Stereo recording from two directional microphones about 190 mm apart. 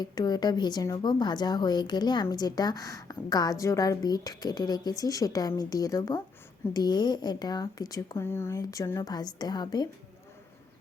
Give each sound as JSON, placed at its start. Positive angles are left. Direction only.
{"t": 0.0, "sound": "speech", "side_deg": 20}